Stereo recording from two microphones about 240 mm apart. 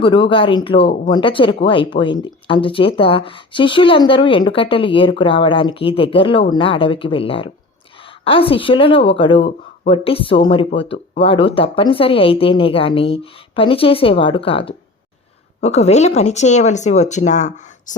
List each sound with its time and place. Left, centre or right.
0.0 s a woman's voice: left